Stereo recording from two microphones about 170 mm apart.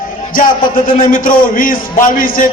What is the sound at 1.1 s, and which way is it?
A man's voice, 55° left (ahead or behind).